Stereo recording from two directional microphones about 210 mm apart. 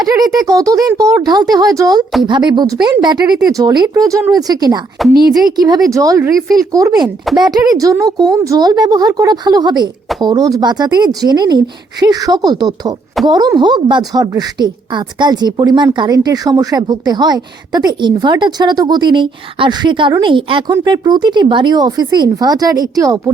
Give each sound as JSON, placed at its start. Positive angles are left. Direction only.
{"t": 0.0, "sound": "a woman's voice", "side_deg": -20}